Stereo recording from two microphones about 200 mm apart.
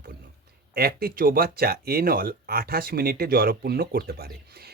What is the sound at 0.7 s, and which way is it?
Speech, 50° right (ahead or behind).